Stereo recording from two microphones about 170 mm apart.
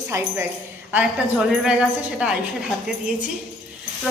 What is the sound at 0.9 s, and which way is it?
A woman's voice, 5° right (ahead or behind).